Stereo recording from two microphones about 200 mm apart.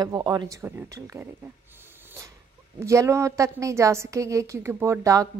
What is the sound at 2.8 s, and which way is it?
A woman's voice, 15° right (ahead or behind).